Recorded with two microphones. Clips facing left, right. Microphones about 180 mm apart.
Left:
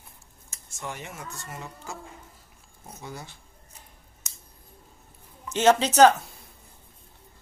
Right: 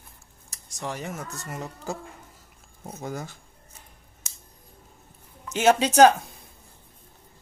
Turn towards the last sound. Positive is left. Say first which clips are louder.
# right 1 dB
turn(degrees=-10)  # may be behind; listen again after turning